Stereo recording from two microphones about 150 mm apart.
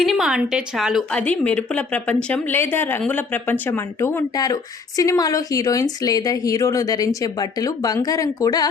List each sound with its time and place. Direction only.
0.0 s a woman's voice: centre (ahead or behind)
1.1 s a woman's voice: 10° left (ahead or behind); by 8.7 s 25° left (ahead or behind)